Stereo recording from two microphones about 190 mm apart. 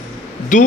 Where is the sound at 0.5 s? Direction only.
40° left (ahead or behind).